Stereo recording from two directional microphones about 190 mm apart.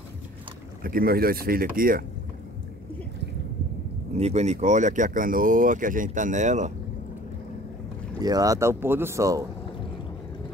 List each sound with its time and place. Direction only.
0.8 s speech: 50° right (ahead or behind)
4.1 s speech: 35° right (ahead or behind)
8.2 s speech: 20° right (ahead or behind)